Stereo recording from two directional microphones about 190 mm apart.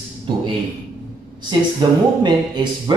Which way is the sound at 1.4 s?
25° right (ahead or behind).